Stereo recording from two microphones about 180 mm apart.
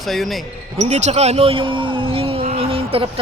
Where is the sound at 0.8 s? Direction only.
40° right (ahead or behind).